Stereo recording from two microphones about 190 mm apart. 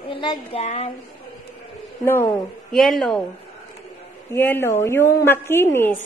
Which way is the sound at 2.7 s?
Centre (ahead or behind).